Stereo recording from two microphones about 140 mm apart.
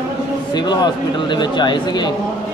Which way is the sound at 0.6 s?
30° left (ahead or behind).